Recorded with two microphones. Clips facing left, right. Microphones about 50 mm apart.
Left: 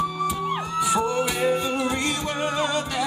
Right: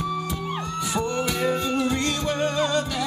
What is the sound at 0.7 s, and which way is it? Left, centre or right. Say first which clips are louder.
Music: left 4 dB; centre.